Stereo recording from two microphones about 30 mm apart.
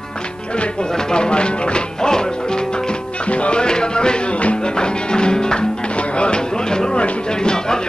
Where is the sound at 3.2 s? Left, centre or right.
Left.